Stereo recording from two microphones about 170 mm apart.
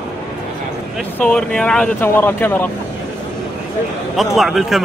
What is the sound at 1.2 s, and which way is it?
Speech, 5° left (ahead or behind).